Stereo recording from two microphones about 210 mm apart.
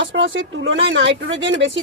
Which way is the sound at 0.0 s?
65° right (ahead or behind).